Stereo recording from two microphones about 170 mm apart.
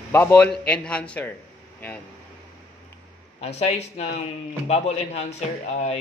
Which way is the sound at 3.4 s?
40° left (ahead or behind).